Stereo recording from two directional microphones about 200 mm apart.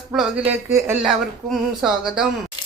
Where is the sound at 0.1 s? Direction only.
5° right (ahead or behind).